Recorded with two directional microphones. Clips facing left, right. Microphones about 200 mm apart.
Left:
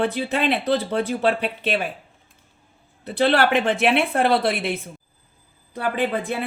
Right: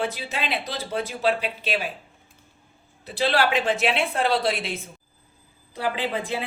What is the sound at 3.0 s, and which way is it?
Speech, 60° left (ahead or behind).